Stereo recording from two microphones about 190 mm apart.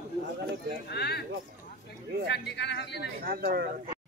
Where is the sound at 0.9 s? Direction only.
55° left (ahead or behind).